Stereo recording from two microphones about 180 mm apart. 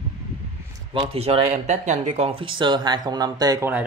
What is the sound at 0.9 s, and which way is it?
Speech, 35° right (ahead or behind).